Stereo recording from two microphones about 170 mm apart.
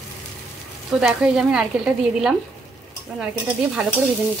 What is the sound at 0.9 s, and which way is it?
A woman's voice, centre (ahead or behind).